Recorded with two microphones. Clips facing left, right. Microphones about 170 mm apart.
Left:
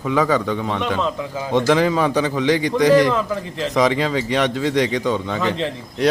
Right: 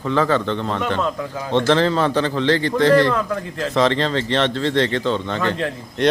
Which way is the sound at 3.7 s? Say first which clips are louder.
Even; 10° left (ahead or behind).